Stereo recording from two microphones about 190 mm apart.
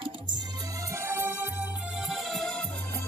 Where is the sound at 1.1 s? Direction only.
10° right (ahead or behind).